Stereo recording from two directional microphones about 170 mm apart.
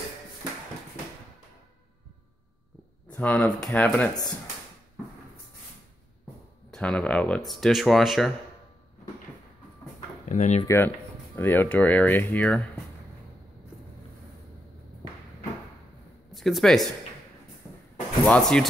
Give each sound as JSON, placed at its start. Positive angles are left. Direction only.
{"t": 3.2, "sound": "speech", "side_deg": 5}
{"t": 6.7, "sound": "speech", "side_deg": 5}
{"t": 10.2, "sound": "speech", "side_deg": 45}
{"t": 10.6, "sound": "speech", "side_deg": 15}
{"t": 16.3, "sound": "speech", "side_deg": 0}
{"t": 18.2, "sound": "speech", "side_deg": 5}